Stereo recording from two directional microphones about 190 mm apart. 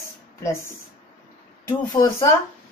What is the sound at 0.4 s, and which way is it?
A woman's voice, 15° left (ahead or behind).